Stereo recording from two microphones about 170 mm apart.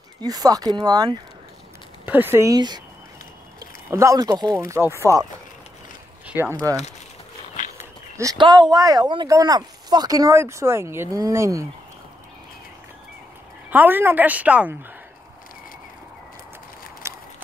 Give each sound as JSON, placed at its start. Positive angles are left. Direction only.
{"t": 0.2, "sound": "speech", "side_deg": -20}
{"t": 2.0, "sound": "a woman's voice", "side_deg": -10}
{"t": 6.2, "sound": "a sound", "side_deg": -10}
{"t": 8.2, "sound": "speech", "side_deg": -25}
{"t": 13.7, "sound": "a woman's voice", "side_deg": -10}
{"t": 17.0, "sound": "a sound", "side_deg": -15}